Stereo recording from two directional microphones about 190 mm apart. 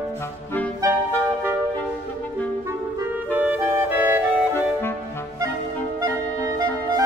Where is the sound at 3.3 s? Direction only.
10° right (ahead or behind).